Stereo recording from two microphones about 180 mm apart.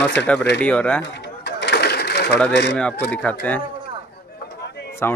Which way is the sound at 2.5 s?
75° left (ahead or behind).